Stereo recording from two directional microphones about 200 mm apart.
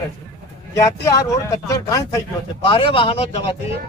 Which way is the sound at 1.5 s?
15° left (ahead or behind).